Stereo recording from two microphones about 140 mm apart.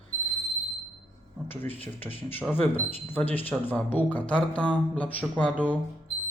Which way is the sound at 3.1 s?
15° left (ahead or behind).